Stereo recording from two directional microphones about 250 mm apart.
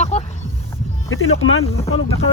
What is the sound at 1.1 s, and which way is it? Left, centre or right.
Speech, left.